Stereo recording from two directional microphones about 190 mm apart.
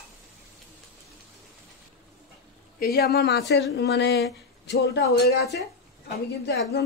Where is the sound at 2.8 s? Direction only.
55° left (ahead or behind).